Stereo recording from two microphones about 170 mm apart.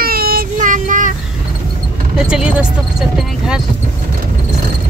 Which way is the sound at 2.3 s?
5° right (ahead or behind).